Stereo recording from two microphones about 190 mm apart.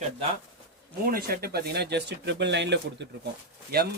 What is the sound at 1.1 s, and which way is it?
Speech, 50° right (ahead or behind).